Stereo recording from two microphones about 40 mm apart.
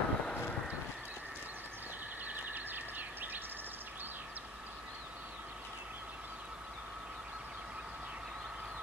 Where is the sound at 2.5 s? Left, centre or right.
Right.